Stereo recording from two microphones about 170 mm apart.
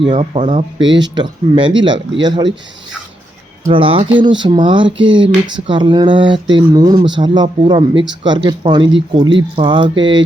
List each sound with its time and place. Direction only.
0.0 s speech: 30° right (ahead or behind)
3.7 s speech: 30° right (ahead or behind)